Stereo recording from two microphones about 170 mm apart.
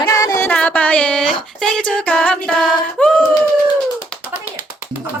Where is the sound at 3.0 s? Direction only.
5° left (ahead or behind).